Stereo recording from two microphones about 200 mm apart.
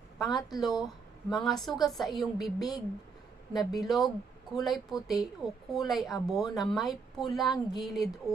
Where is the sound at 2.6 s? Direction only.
20° left (ahead or behind).